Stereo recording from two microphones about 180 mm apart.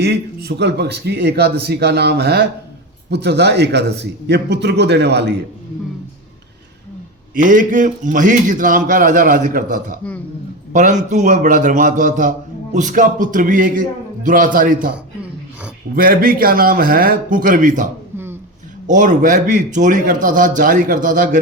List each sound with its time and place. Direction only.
0.0 s a man's voice: 65° right (ahead or behind)
7.3 s a man's voice: 45° right (ahead or behind)
16.0 s a man's voice: 55° right (ahead or behind)